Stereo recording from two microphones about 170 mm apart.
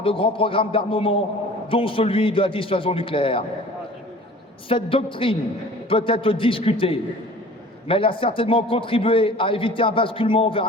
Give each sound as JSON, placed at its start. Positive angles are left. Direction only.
{"t": 0.0, "sound": "a man's voice", "side_deg": 30}
{"t": 4.7, "sound": "a man's voice", "side_deg": 30}